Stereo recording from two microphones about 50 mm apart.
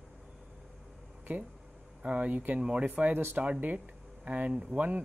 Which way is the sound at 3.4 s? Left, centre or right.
Right.